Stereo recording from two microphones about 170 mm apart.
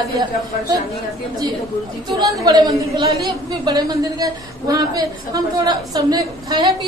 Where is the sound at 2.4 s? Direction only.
25° right (ahead or behind).